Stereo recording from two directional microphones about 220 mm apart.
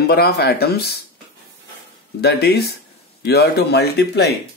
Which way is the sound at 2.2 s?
45° left (ahead or behind).